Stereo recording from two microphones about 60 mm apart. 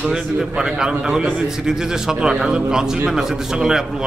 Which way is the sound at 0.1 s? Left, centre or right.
Centre.